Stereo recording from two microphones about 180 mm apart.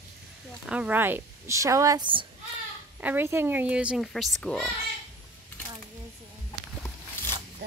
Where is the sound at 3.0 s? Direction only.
10° right (ahead or behind); by 4.7 s 5° left (ahead or behind).